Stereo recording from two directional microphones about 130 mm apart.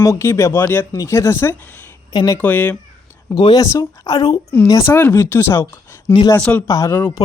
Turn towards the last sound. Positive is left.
turn(degrees=30)  # may be behind; listen again after turning